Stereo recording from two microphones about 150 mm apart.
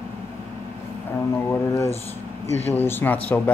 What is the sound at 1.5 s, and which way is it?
Speech, 15° left (ahead or behind).